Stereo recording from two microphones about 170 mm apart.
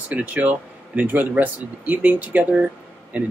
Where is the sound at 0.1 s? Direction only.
10° right (ahead or behind).